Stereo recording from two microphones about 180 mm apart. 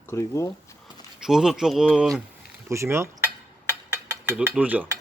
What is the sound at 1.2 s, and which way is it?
Speech, 5° right (ahead or behind).